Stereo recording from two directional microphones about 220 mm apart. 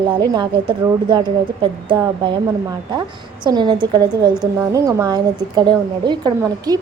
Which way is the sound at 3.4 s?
20° right (ahead or behind).